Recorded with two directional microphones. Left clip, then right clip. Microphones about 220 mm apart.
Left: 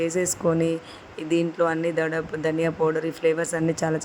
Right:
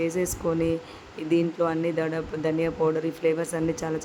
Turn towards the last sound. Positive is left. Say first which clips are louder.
# left 3 dB
turn(degrees=15)  # may be behind; listen again after turning